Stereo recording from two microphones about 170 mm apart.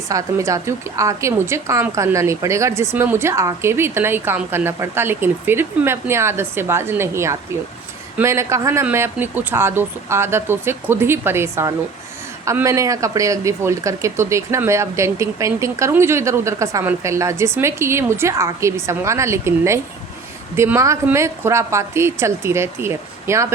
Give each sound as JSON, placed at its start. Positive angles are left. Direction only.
{"t": 0.1, "sound": "speech", "side_deg": -20}